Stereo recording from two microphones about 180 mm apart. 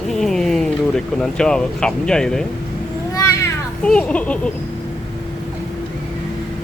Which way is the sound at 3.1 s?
20° left (ahead or behind).